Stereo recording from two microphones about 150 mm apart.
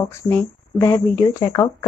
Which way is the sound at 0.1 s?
15° left (ahead or behind).